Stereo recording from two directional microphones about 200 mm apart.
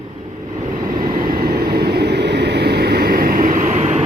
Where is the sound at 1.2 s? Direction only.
50° right (ahead or behind).